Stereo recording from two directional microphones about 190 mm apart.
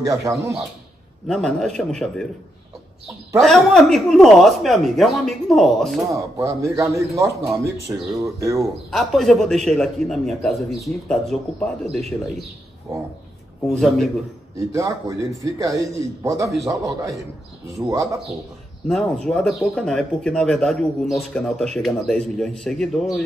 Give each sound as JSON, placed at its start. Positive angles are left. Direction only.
{"t": 0.3, "sound": "a man's voice", "side_deg": -15}
{"t": 1.2, "sound": "speech", "side_deg": 0}
{"t": 3.3, "sound": "speech", "side_deg": 0}
{"t": 6.3, "sound": "a man's voice", "side_deg": -15}
{"t": 8.5, "sound": "speech", "side_deg": 0}
{"t": 13.7, "sound": "speech", "side_deg": 0}
{"t": 14.7, "sound": "a man's voice", "side_deg": -15}
{"t": 18.9, "sound": "speech", "side_deg": 0}